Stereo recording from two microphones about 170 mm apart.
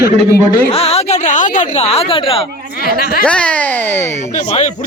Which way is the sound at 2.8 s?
60° left (ahead or behind).